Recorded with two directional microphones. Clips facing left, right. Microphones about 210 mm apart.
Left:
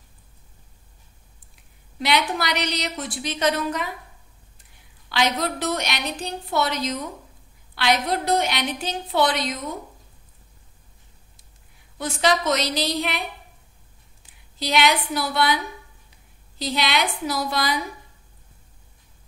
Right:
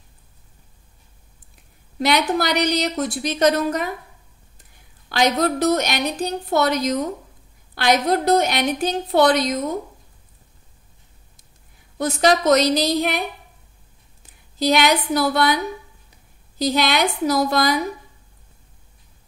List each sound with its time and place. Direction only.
2.0 s speech: 45° right (ahead or behind)
5.1 s speech: 45° right (ahead or behind)
12.0 s speech: 45° right (ahead or behind)
14.6 s speech: 45° right (ahead or behind)